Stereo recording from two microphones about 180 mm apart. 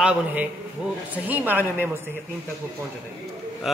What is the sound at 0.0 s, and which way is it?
A man's voice, 10° right (ahead or behind).